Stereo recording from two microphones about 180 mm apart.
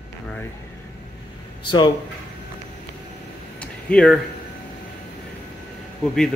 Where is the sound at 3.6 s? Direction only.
5° left (ahead or behind).